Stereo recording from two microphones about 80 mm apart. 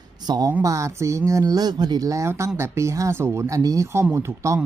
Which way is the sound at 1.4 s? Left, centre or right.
Right.